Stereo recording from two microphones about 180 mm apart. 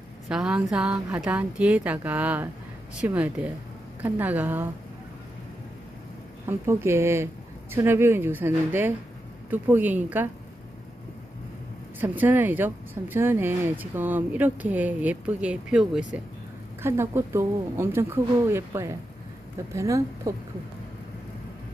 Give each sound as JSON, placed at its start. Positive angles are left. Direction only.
{"t": 0.3, "sound": "speech", "side_deg": -5}
{"t": 6.5, "sound": "speech", "side_deg": -15}
{"t": 12.0, "sound": "speech", "side_deg": -10}
{"t": 16.8, "sound": "speech", "side_deg": -15}